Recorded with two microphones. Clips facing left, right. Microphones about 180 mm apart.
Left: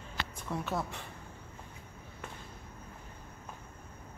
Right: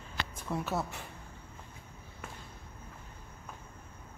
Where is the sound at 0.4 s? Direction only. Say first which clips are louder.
Right 1 dB; 5° right (ahead or behind).